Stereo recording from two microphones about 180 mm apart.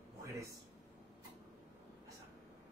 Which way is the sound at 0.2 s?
15° right (ahead or behind).